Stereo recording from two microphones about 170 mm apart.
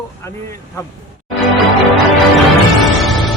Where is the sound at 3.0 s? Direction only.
Centre (ahead or behind).